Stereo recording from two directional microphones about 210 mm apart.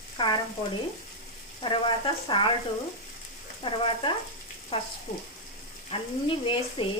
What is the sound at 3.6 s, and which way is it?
Speech, 25° left (ahead or behind).